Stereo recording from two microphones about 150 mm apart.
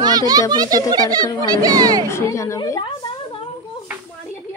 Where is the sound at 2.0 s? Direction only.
20° left (ahead or behind).